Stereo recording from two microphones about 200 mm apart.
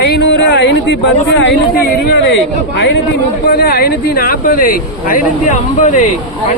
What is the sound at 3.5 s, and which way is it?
Speech, 50° left (ahead or behind).